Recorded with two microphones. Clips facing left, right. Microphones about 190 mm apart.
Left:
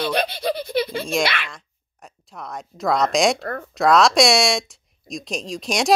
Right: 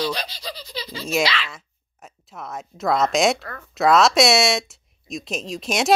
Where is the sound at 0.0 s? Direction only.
55° left (ahead or behind).